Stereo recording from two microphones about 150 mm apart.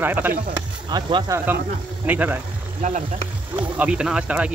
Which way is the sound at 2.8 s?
55° right (ahead or behind).